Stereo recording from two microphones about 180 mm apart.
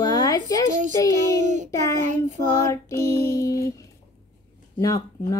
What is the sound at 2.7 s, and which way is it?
Music, 15° left (ahead or behind).